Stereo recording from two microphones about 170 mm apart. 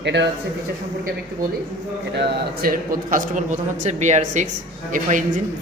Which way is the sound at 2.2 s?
60° right (ahead or behind).